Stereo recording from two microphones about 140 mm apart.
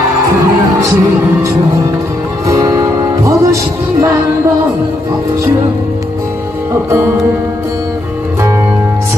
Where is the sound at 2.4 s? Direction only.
25° right (ahead or behind).